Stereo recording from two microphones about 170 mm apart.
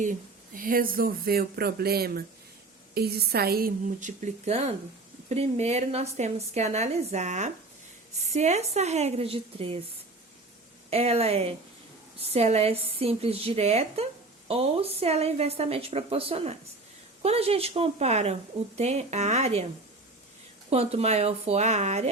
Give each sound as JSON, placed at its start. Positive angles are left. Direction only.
{"t": 0.0, "sound": "a woman's voice", "side_deg": -50}
{"t": 10.8, "sound": "a woman's voice", "side_deg": -35}
{"t": 20.7, "sound": "a woman's voice", "side_deg": -40}